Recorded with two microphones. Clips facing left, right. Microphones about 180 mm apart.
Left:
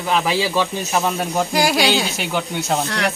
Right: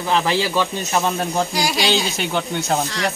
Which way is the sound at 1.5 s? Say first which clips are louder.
Left 4 dB; 55° left (ahead or behind).